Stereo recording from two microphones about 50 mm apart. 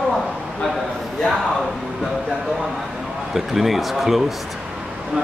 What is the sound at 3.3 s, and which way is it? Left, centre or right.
Speech, centre.